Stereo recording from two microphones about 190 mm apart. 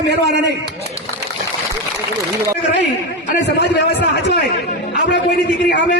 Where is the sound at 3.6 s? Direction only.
65° left (ahead or behind).